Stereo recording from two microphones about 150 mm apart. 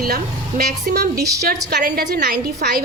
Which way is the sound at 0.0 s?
70° right (ahead or behind).